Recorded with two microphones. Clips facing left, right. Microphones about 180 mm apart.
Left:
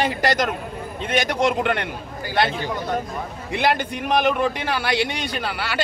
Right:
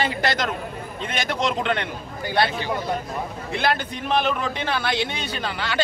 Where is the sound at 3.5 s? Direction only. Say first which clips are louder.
Left 3 dB; 15° left (ahead or behind).